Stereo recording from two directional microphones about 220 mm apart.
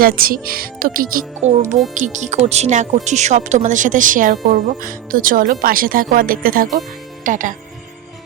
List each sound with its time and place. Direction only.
0.0 s speech: 40° right (ahead or behind)